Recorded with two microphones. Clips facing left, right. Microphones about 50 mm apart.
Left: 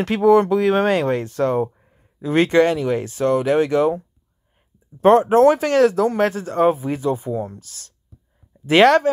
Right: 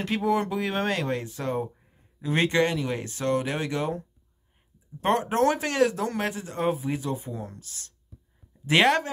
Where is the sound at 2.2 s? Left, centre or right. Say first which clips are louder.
Left 7 dB; left.